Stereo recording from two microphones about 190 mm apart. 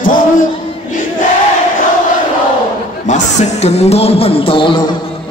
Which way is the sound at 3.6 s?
35° left (ahead or behind).